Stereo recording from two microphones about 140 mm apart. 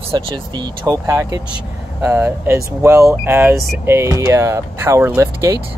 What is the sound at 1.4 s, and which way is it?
Speech, 10° right (ahead or behind).